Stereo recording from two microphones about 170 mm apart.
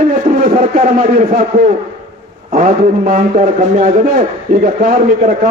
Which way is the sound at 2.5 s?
50° right (ahead or behind).